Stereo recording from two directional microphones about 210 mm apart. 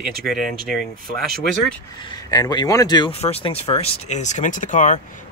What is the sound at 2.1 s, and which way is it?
Speech, 20° left (ahead or behind).